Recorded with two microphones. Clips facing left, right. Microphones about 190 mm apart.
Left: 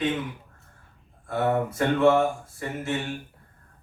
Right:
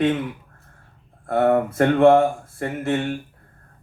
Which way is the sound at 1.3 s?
60° right (ahead or behind).